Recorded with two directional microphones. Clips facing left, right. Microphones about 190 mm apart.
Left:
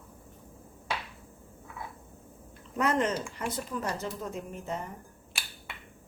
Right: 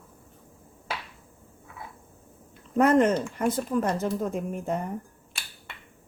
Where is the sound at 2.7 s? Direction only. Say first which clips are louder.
Right 8 dB; 50° right (ahead or behind).